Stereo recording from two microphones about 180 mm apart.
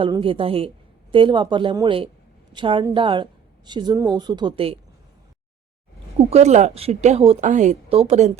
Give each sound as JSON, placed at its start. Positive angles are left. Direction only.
{"t": 0.0, "sound": "a woman's voice", "side_deg": -30}
{"t": 6.1, "sound": "a woman's voice", "side_deg": -35}